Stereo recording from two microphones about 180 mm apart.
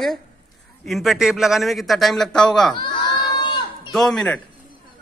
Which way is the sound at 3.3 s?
25° left (ahead or behind).